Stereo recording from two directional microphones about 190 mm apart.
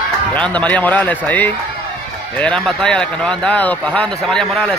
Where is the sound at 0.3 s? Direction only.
5° left (ahead or behind).